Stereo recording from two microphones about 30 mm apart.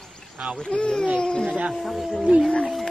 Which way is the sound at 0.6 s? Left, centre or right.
Left.